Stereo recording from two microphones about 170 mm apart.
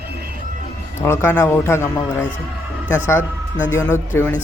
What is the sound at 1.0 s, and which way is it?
Speech, 15° left (ahead or behind).